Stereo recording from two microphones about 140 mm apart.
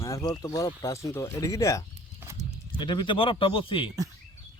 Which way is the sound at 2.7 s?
35° left (ahead or behind).